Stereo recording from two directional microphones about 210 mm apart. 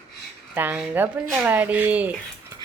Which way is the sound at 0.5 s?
10° right (ahead or behind).